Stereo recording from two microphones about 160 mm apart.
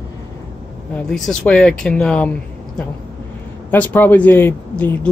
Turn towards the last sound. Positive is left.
turn(degrees=15)  # may be behind; listen again after turning